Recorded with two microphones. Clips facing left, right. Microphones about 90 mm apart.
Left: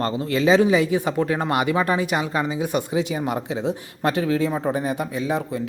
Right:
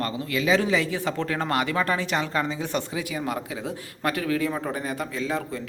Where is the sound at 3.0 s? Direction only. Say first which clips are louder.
Left 5 dB; 25° left (ahead or behind).